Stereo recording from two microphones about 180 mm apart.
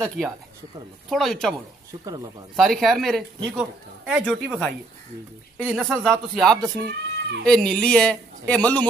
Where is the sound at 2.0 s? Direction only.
20° right (ahead or behind).